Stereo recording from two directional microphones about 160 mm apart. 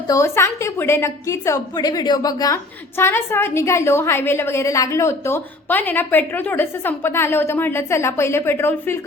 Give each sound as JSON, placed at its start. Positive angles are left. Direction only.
{"t": 0.1, "sound": "a woman's voice", "side_deg": 20}